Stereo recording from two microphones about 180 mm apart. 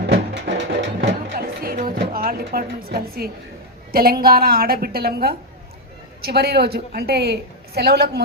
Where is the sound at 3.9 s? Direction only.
55° right (ahead or behind).